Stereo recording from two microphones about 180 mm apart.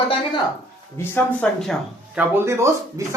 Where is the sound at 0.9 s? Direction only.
10° left (ahead or behind).